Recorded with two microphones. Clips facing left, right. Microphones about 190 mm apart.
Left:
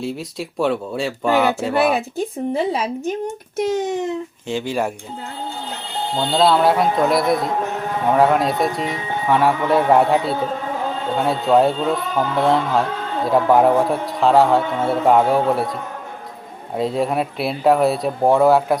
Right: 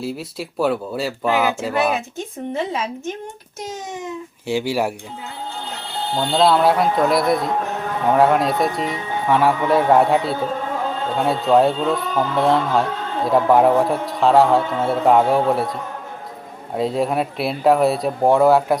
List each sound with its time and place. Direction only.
0.0 s a man's voice: 5° right (ahead or behind)
2.0 s speech: 35° left (ahead or behind)
3.6 s a child's voice: 60° left (ahead or behind)
4.4 s speech: 10° right (ahead or behind)
6.1 s a man's voice: centre (ahead or behind)
16.7 s a man's voice: centre (ahead or behind)